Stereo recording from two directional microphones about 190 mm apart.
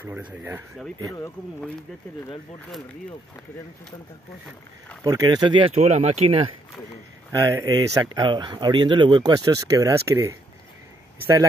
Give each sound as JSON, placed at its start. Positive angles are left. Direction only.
{"t": 0.1, "sound": "speech", "side_deg": -10}
{"t": 5.0, "sound": "speech", "side_deg": -20}
{"t": 7.3, "sound": "speech", "side_deg": -20}